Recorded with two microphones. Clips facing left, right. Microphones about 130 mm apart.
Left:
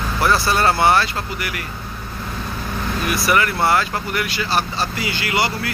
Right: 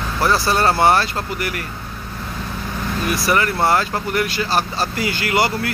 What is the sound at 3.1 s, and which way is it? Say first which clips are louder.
Speech: even; 30° right (ahead or behind).